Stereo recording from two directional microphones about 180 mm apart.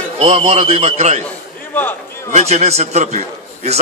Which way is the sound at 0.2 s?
30° right (ahead or behind).